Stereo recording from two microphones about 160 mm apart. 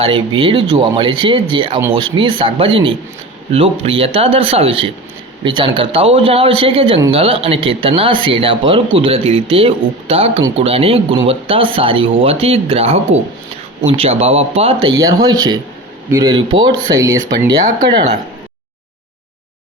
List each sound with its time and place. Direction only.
0.0 s speech: 35° right (ahead or behind)
14.9 s speech: 25° right (ahead or behind)
16.3 s speech: 30° right (ahead or behind)